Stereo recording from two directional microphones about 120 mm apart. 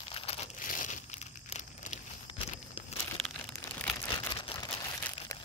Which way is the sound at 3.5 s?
20° left (ahead or behind).